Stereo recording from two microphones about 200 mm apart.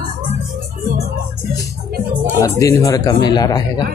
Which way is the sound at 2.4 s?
15° left (ahead or behind).